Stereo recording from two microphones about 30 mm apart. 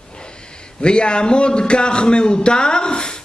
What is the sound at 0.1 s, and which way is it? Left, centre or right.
Speech, left.